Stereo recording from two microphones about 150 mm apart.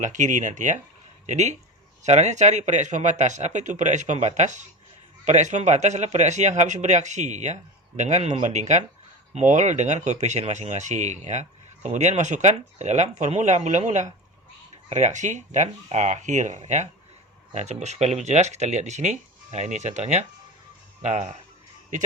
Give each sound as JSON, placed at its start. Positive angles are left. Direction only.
{"t": 0.0, "sound": "speech", "side_deg": -55}